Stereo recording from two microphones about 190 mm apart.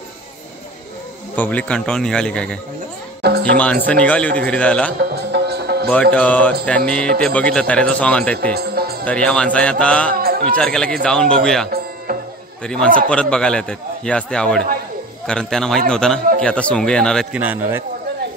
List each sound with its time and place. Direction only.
1.3 s a man's voice: 10° left (ahead or behind)
3.2 s music: 55° right (ahead or behind)
3.5 s a man's voice: 5° left (ahead or behind)
5.1 s music: 60° right (ahead or behind)
5.9 s a man's voice: 5° left (ahead or behind)
8.5 s music: 55° right (ahead or behind)
9.0 s a man's voice: 5° left (ahead or behind)
12.1 s music: 50° right (ahead or behind)
12.6 s a man's voice: 5° left (ahead or behind)
17.4 s a man's voice: 10° right (ahead or behind)